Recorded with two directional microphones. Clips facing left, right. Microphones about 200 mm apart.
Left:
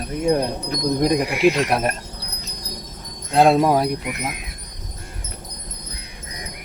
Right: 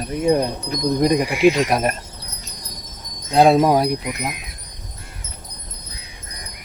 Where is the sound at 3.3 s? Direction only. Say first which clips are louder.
Right 2 dB; centre (ahead or behind).